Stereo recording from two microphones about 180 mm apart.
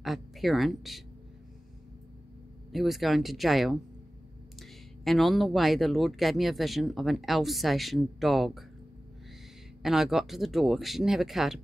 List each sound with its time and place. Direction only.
0.0 s speech: centre (ahead or behind)
2.7 s speech: centre (ahead or behind)
9.8 s speech: centre (ahead or behind)